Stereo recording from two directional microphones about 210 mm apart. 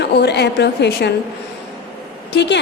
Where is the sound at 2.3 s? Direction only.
55° left (ahead or behind).